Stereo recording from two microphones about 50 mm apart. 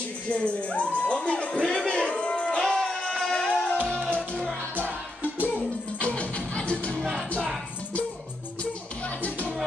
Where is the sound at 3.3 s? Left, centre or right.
Centre.